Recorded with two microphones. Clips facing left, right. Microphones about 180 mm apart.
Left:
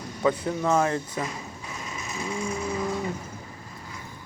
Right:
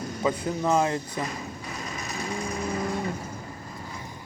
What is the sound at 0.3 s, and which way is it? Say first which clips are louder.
Speech: left 2 dB; 20° right (ahead or behind).